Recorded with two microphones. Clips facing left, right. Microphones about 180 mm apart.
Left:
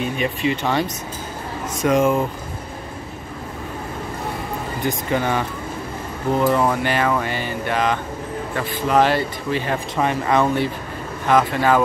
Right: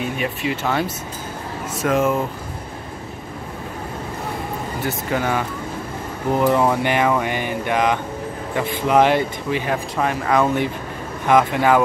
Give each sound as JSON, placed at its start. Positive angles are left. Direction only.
{"t": 0.2, "sound": "speech", "side_deg": -5}
{"t": 5.1, "sound": "speech", "side_deg": -5}
{"t": 6.3, "sound": "speech", "side_deg": -15}
{"t": 9.9, "sound": "speech", "side_deg": 0}
{"t": 11.2, "sound": "speech", "side_deg": -15}